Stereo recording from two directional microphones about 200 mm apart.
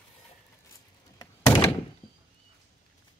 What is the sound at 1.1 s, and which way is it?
Thunk, 20° left (ahead or behind).